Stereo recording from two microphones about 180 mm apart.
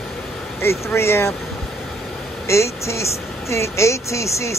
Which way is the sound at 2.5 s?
15° left (ahead or behind).